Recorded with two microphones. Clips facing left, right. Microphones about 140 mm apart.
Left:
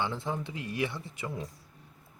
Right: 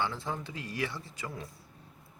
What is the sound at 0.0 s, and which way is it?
Speech, 20° left (ahead or behind).